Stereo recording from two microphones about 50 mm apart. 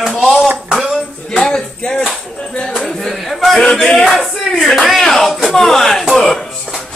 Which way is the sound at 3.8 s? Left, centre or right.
Left.